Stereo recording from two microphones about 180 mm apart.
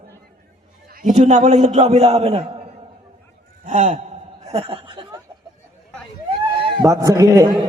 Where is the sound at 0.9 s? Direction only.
40° right (ahead or behind).